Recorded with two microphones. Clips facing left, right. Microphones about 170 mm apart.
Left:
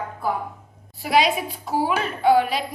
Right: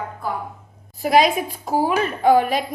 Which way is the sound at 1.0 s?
45° right (ahead or behind).